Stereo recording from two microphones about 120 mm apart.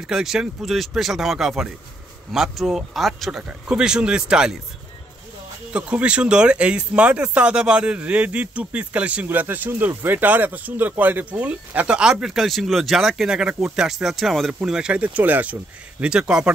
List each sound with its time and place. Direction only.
0.0 s speech: 5° right (ahead or behind)
5.7 s speech: 10° right (ahead or behind)